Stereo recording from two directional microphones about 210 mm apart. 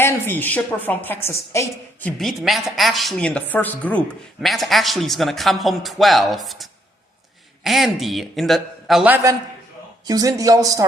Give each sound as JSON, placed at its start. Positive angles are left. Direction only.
{"t": 0.0, "sound": "a woman's voice", "side_deg": 10}
{"t": 2.0, "sound": "a woman's voice", "side_deg": 0}
{"t": 10.1, "sound": "a man's voice", "side_deg": -15}